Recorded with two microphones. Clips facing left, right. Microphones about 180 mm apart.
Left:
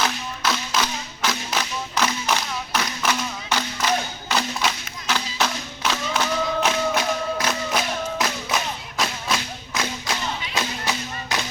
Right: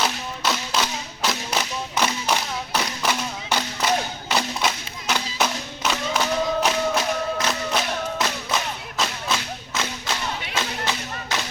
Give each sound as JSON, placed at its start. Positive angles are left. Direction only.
{"t": 0.0, "sound": "music", "side_deg": -10}
{"t": 1.3, "sound": "clapping", "side_deg": -15}
{"t": 4.4, "sound": "a sound", "side_deg": -10}
{"t": 5.8, "sound": "music", "side_deg": -5}